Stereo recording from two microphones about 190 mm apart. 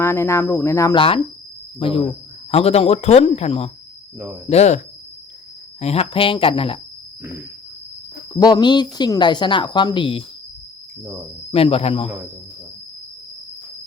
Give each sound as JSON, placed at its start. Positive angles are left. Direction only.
{"t": 0.0, "sound": "speech", "side_deg": 15}
{"t": 0.9, "sound": "speech", "side_deg": 30}
{"t": 5.8, "sound": "speech", "side_deg": 30}
{"t": 8.4, "sound": "speech", "side_deg": 20}
{"t": 11.0, "sound": "speech", "side_deg": -10}
{"t": 11.5, "sound": "speech", "side_deg": 30}